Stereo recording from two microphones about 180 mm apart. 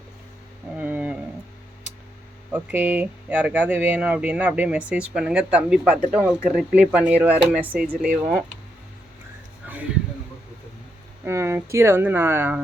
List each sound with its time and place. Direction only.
0.8 s a sound: 10° right (ahead or behind)
2.5 s speech: 10° right (ahead or behind)
11.3 s speech: 15° right (ahead or behind)